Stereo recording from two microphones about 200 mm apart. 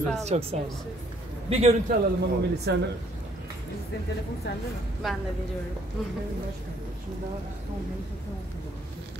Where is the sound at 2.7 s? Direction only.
60° right (ahead or behind).